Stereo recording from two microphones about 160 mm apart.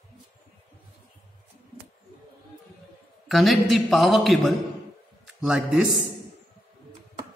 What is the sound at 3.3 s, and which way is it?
A man's voice, centre (ahead or behind).